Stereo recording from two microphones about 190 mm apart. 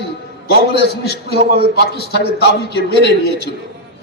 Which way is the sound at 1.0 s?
55° left (ahead or behind).